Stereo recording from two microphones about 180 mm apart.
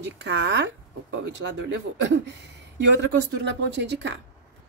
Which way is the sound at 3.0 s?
75° right (ahead or behind).